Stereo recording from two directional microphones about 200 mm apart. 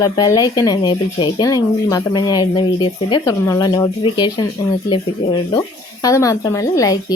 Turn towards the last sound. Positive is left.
turn(degrees=15)  # may be behind; listen again after turning